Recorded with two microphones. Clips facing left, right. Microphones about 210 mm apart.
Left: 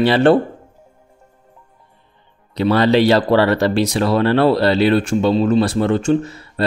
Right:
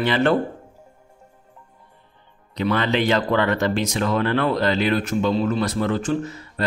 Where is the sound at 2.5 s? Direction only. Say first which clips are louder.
Left 7 dB; 35° left (ahead or behind).